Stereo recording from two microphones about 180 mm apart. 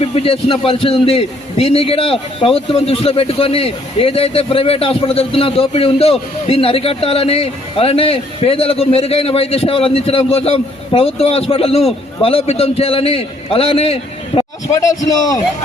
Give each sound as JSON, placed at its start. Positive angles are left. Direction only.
{"t": 0.1, "sound": "a man's voice", "side_deg": 30}
{"t": 14.7, "sound": "a man's voice", "side_deg": 20}